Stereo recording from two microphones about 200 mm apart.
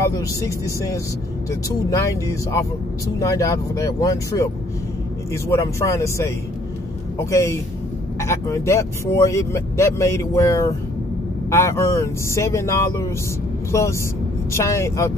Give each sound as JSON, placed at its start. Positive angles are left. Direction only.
{"t": 0.0, "sound": "speech", "side_deg": 15}